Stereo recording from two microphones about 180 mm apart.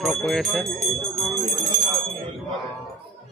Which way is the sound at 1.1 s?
Centre (ahead or behind).